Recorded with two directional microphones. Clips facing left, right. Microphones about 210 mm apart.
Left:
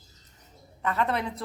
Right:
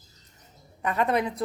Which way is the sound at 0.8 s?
15° right (ahead or behind).